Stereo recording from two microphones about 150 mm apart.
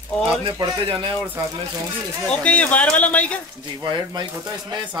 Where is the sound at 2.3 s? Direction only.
10° left (ahead or behind).